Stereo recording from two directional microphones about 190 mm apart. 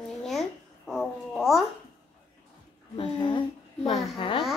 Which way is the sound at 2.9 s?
25° left (ahead or behind).